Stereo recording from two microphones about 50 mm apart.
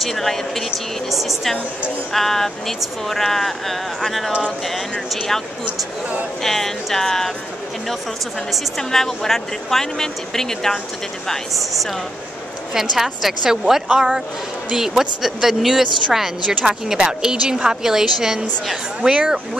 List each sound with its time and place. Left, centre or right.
0.0 s a woman's voice: centre
5.7 s speech: right
6.4 s a woman's voice: centre
8.5 s a woman's voice: centre
12.7 s a woman's voice: centre
18.9 s speech: right